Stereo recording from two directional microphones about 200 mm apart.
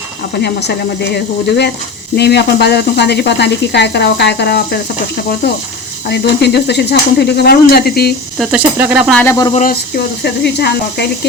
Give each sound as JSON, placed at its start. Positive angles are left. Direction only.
{"t": 0.4, "sound": "speech", "side_deg": 55}
{"t": 6.1, "sound": "speech", "side_deg": 55}
{"t": 8.4, "sound": "speech", "side_deg": -5}
{"t": 9.6, "sound": "speech", "side_deg": 50}